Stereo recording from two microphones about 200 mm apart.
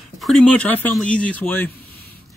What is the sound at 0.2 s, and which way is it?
Speech, 5° left (ahead or behind).